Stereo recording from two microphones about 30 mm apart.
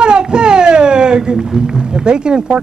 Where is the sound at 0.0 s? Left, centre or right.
Right.